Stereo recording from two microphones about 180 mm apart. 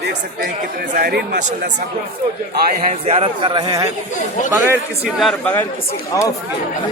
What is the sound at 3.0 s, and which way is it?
A man's voice, 35° right (ahead or behind).